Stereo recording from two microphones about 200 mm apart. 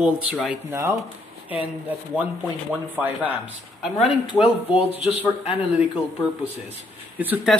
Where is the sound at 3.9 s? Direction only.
30° left (ahead or behind).